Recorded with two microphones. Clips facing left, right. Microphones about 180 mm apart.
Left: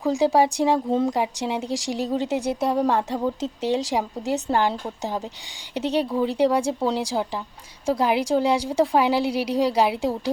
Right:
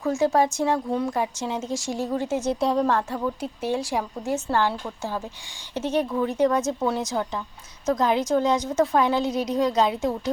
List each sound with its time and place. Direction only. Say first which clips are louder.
0.0 s speech: left 2 dB; 15° left (ahead or behind)